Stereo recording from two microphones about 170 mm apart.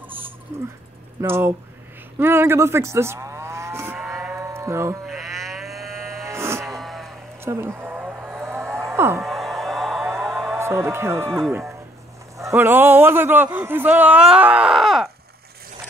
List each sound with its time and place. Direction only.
1.2 s a man's voice: 15° right (ahead or behind)
2.1 s moo: 15° right (ahead or behind)
4.1 s music: 10° right (ahead or behind)
5.0 s livestock: centre (ahead or behind)
6.2 s music: 15° right (ahead or behind)
6.6 s cattle: centre (ahead or behind)
7.4 s a sound: 15° right (ahead or behind)
8.9 s speech: 15° right (ahead or behind)
9.2 s music: centre (ahead or behind)
10.2 s a sound: centre (ahead or behind)
10.6 s a man's voice: 15° right (ahead or behind)
11.2 s speech: 5° left (ahead or behind)
12.4 s a man's voice: 15° right (ahead or behind); by 15.0 s centre (ahead or behind)